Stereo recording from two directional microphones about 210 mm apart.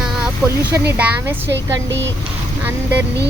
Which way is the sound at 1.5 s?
60° right (ahead or behind).